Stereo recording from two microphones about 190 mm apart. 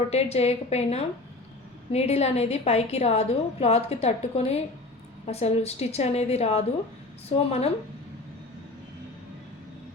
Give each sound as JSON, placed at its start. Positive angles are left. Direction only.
{"t": 0.1, "sound": "a woman's voice", "side_deg": 35}